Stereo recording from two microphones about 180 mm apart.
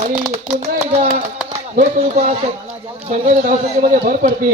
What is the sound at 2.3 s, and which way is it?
Speech, 30° right (ahead or behind).